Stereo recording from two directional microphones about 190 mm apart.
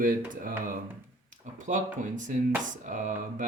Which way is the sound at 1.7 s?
40° right (ahead or behind).